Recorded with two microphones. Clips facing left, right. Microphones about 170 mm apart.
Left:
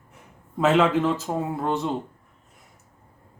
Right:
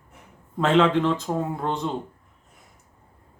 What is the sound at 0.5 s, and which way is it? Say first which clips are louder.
Speech: even; 5° left (ahead or behind).